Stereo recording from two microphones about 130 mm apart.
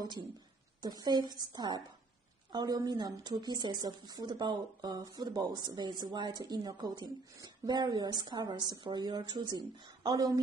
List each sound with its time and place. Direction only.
0.7 s speech: 30° right (ahead or behind)